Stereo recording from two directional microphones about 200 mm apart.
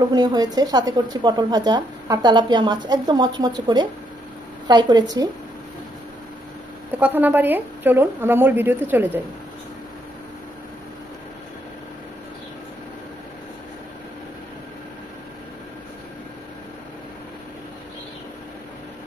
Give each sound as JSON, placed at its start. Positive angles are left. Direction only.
{"t": 0.0, "sound": "speech", "side_deg": -20}
{"t": 7.0, "sound": "speech", "side_deg": -10}